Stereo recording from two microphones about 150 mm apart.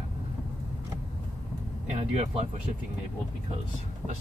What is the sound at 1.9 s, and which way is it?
Speech, 45° right (ahead or behind).